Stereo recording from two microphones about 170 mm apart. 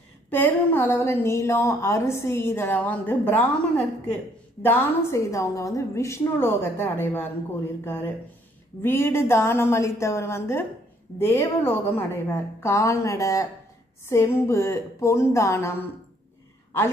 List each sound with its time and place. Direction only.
0.3 s a woman's voice: 10° left (ahead or behind)